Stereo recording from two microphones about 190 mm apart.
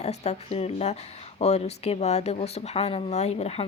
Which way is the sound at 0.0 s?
35° left (ahead or behind).